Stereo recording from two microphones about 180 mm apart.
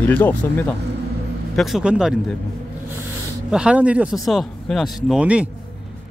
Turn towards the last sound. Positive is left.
turn(degrees=-5)  # may be behind; listen again after turning